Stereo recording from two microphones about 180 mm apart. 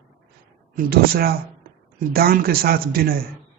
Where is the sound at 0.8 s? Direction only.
55° right (ahead or behind).